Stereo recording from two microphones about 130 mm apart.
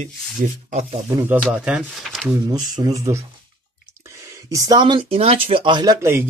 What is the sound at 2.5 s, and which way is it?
Speech, 30° right (ahead or behind).